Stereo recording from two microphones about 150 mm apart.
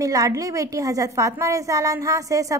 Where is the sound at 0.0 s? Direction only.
25° right (ahead or behind).